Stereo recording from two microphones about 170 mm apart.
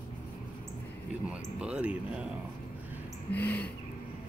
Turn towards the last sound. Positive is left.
turn(degrees=10)  # may be behind; listen again after turning